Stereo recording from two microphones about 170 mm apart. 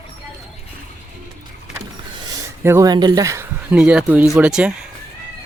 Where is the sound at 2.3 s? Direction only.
15° right (ahead or behind).